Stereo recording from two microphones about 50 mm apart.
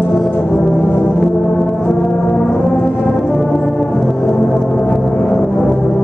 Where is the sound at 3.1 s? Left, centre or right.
Centre.